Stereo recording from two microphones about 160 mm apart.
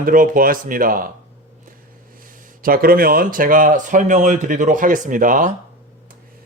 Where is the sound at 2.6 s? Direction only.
65° right (ahead or behind).